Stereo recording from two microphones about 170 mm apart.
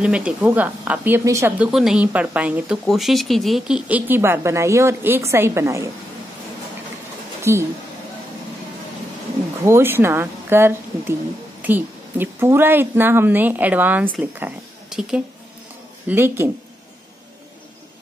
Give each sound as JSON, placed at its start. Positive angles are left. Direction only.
{"t": 0.0, "sound": "speech", "side_deg": -5}
{"t": 1.7, "sound": "speech", "side_deg": 0}
{"t": 7.5, "sound": "speech", "side_deg": -15}
{"t": 9.7, "sound": "speech", "side_deg": -15}